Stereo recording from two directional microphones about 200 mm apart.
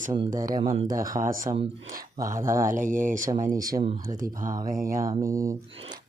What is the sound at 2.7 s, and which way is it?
Speech, 40° right (ahead or behind).